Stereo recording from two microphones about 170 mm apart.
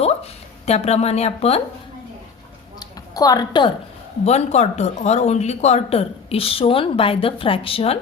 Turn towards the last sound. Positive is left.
turn(degrees=35)  # may be behind; listen again after turning